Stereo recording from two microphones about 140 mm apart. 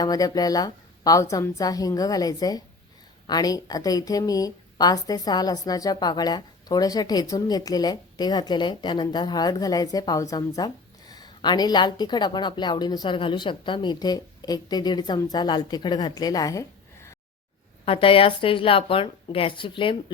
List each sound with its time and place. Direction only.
0.0 s a woman's voice: 25° left (ahead or behind)
17.8 s a woman's voice: 40° left (ahead or behind)